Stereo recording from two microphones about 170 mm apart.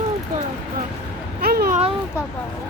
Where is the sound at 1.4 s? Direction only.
65° right (ahead or behind).